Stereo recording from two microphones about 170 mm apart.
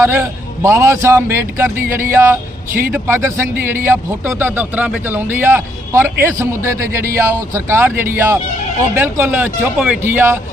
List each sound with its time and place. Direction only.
0.0 s a man's voice: 15° right (ahead or behind)